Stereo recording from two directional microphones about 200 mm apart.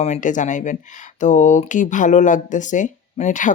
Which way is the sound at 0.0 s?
35° left (ahead or behind).